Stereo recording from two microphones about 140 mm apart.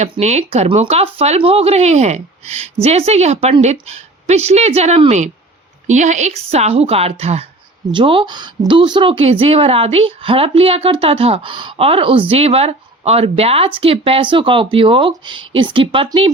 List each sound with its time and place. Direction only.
0.0 s speech: 55° right (ahead or behind)
7.9 s a woman's voice: 35° right (ahead or behind)